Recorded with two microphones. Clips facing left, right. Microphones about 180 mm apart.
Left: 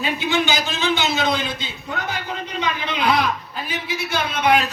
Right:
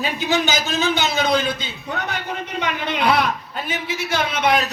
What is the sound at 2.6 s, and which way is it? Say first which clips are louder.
Speech: right 1 dB; 70° right (ahead or behind).